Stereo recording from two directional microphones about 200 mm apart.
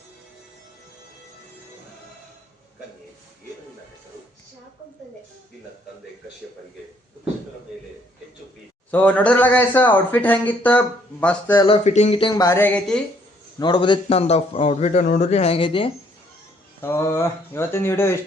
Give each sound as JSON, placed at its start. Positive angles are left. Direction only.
{"t": 8.9, "sound": "speech", "side_deg": 10}
{"t": 11.5, "sound": "a man's voice", "side_deg": 20}
{"t": 11.9, "sound": "a man's voice", "side_deg": 35}
{"t": 13.6, "sound": "a man's voice", "side_deg": 20}
{"t": 16.8, "sound": "speech", "side_deg": 10}